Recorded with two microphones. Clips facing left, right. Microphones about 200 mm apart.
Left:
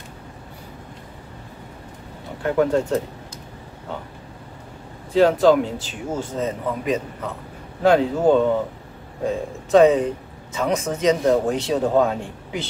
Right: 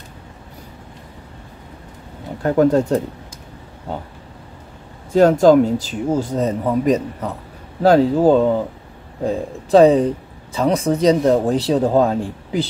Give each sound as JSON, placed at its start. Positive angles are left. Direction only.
{"t": 2.4, "sound": "speech", "side_deg": -40}
{"t": 5.1, "sound": "speech", "side_deg": -45}